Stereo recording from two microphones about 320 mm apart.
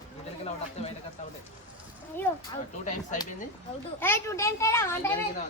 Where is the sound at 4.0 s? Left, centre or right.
Centre.